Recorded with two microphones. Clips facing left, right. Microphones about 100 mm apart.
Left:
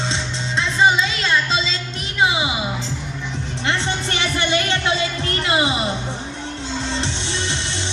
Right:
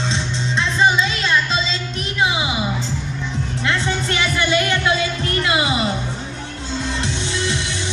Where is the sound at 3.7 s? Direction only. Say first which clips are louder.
Right 1 dB; 25° left (ahead or behind).